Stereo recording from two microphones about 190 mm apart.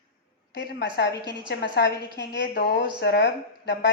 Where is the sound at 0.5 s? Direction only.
60° left (ahead or behind).